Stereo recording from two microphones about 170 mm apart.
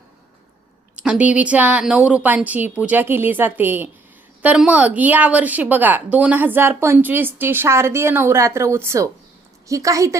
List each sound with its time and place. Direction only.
0.9 s a woman's voice: 5° right (ahead or behind)